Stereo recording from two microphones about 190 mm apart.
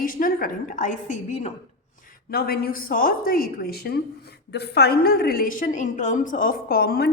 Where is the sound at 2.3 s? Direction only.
55° left (ahead or behind).